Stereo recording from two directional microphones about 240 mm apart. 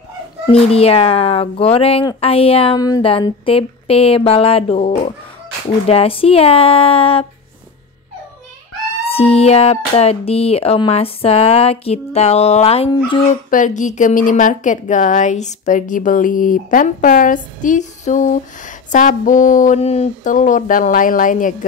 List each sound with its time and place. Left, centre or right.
0.5 s speech: left
9.0 s a woman's voice: left